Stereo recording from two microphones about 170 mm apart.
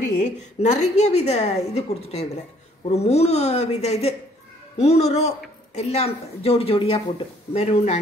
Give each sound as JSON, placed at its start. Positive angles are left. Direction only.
{"t": 0.2, "sound": "a woman's voice", "side_deg": 45}